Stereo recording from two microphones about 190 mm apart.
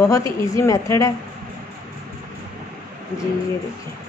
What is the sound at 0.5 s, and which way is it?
Speech, 15° left (ahead or behind).